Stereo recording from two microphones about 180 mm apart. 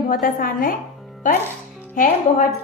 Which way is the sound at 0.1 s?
50° left (ahead or behind).